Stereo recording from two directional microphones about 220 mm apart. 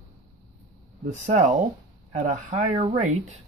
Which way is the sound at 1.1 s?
35° right (ahead or behind).